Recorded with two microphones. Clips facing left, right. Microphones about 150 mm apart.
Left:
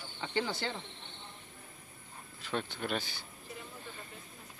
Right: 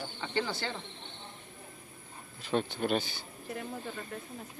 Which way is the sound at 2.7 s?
30° right (ahead or behind).